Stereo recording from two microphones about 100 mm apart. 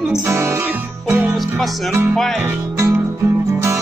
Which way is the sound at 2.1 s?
5° left (ahead or behind).